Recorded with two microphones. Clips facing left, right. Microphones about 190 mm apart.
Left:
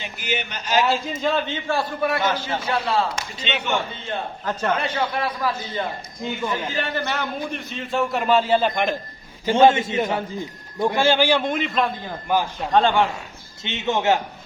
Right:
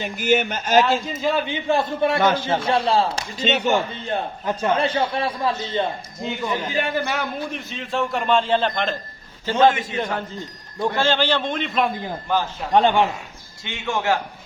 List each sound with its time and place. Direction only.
0.0 s a man's voice: 50° right (ahead or behind)
1.0 s a man's voice: 5° right (ahead or behind); by 2.2 s 25° right (ahead or behind)
2.2 s a man's voice: 50° right (ahead or behind)
2.6 s a man's voice: 30° right (ahead or behind)
4.8 s a man's voice: 30° right (ahead or behind)
6.5 s a man's voice: 10° right (ahead or behind); by 9.0 s 10° left (ahead or behind)
9.6 s a man's voice: 25° left (ahead or behind)
10.8 s a man's voice: 10° left (ahead or behind)
12.3 s a man's voice: 10° left (ahead or behind)
12.7 s a man's voice: 20° right (ahead or behind)
13.7 s a man's voice: 20° left (ahead or behind)